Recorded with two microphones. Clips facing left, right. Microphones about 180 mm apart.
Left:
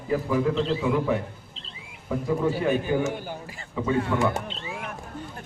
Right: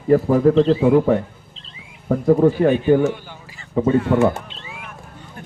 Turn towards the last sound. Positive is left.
turn(degrees=-50)  # may be behind; listen again after turning